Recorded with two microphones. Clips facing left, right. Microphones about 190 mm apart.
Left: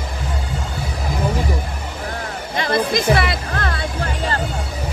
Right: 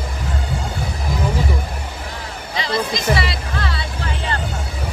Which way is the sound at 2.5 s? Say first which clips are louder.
Left 3 dB; 55° left (ahead or behind).